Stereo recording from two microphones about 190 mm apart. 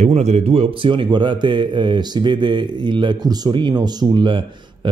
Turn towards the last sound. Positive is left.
turn(degrees=-25)  # may be behind; listen again after turning